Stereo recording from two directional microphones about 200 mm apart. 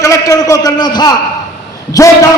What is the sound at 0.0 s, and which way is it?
A man's voice, 15° left (ahead or behind).